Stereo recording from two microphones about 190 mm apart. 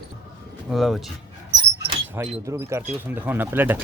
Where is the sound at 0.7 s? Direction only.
Centre (ahead or behind).